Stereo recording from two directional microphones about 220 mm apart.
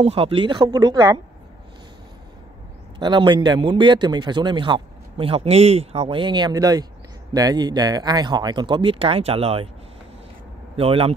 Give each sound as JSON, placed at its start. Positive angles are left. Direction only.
{"t": 0.0, "sound": "a man's voice", "side_deg": -25}
{"t": 3.0, "sound": "a man's voice", "side_deg": -20}
{"t": 10.8, "sound": "a man's voice", "side_deg": -25}